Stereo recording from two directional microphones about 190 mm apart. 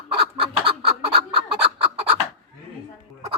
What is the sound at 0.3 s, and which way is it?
Chicken, 30° right (ahead or behind).